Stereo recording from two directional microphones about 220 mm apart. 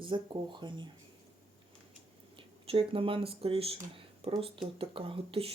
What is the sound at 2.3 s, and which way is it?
Speech, 25° right (ahead or behind).